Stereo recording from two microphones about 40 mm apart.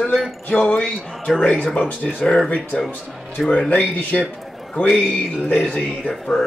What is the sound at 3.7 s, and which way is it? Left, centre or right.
Speech, left.